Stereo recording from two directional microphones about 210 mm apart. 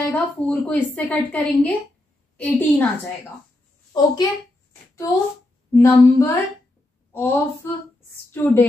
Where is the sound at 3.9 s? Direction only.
20° left (ahead or behind).